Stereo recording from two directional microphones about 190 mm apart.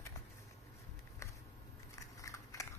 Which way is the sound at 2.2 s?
15° left (ahead or behind).